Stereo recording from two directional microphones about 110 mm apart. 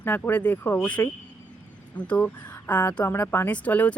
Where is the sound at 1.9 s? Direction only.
15° left (ahead or behind).